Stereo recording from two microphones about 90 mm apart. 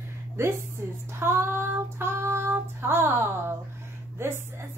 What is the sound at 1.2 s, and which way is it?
Child singing, 30° right (ahead or behind).